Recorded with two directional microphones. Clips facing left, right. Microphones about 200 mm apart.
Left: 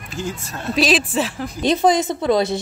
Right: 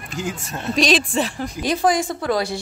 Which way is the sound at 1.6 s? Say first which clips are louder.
Left 3 dB; 25° left (ahead or behind).